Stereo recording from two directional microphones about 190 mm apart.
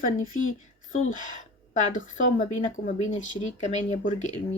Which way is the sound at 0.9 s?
90° left.